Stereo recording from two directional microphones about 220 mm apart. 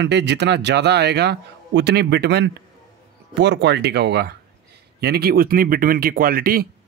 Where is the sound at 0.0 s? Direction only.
50° right (ahead or behind).